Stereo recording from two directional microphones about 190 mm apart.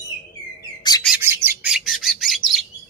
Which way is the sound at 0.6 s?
20° left (ahead or behind).